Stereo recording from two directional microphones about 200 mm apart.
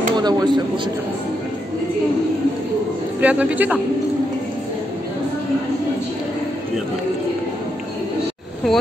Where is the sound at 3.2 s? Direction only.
5° right (ahead or behind).